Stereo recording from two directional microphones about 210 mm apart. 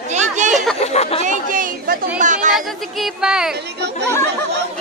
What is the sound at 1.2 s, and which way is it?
Speech, 35° right (ahead or behind).